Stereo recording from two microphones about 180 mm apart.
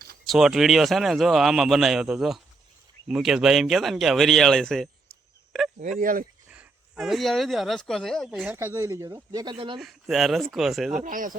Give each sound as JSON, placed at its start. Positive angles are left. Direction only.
{"t": 0.3, "sound": "speech", "side_deg": 0}
{"t": 6.0, "sound": "speech", "side_deg": -50}
{"t": 6.5, "sound": "speech", "side_deg": -5}
{"t": 8.5, "sound": "speech", "side_deg": -15}
{"t": 9.8, "sound": "speech", "side_deg": 0}
{"t": 10.9, "sound": "speech", "side_deg": -50}